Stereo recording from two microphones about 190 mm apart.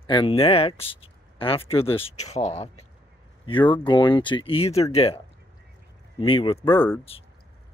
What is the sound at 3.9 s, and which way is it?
Speech, 25° left (ahead or behind).